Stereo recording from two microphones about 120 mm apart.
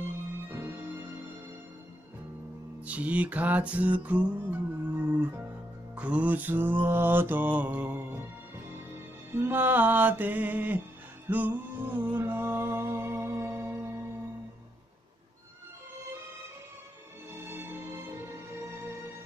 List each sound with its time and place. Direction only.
0.5 s music: 20° right (ahead or behind)
2.8 s music: 10° right (ahead or behind)
5.9 s mantra: 10° right (ahead or behind)
9.3 s mantra: 15° right (ahead or behind)
11.2 s music: 15° right (ahead or behind)
17.3 s music: 20° right (ahead or behind)